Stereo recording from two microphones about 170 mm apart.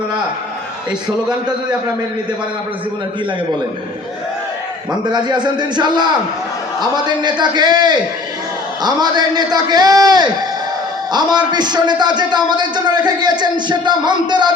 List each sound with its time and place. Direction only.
4.9 s a man's voice: 25° right (ahead or behind)